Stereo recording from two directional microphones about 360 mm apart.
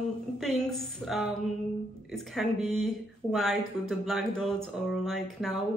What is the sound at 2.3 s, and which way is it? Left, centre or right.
Speech, centre.